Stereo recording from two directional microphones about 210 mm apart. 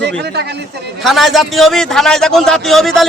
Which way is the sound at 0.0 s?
55° right (ahead or behind).